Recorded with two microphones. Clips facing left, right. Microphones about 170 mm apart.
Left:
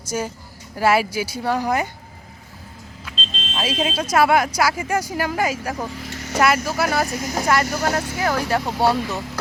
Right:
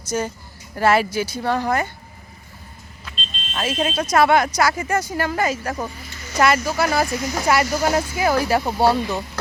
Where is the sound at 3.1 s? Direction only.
90° left.